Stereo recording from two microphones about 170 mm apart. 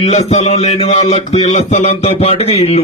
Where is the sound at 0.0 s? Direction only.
40° left (ahead or behind).